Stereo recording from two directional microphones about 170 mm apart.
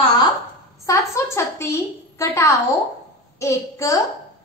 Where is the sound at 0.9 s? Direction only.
15° left (ahead or behind).